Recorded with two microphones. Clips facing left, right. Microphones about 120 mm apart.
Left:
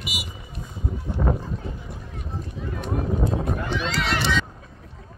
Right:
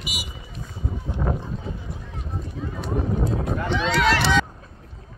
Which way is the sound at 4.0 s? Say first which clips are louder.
Right 6 dB; 90° right.